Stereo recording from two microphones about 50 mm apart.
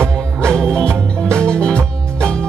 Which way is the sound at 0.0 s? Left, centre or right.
Centre.